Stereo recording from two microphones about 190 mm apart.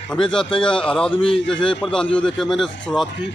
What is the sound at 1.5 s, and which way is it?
Speech, 5° left (ahead or behind).